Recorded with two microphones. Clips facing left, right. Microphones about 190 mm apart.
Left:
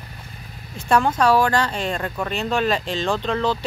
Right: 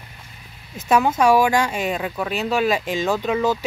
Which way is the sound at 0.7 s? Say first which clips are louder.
Right 1 dB; 5° right (ahead or behind).